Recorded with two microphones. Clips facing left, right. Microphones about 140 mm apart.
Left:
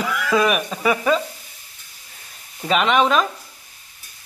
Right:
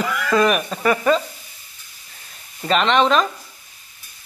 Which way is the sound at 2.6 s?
5° left (ahead or behind).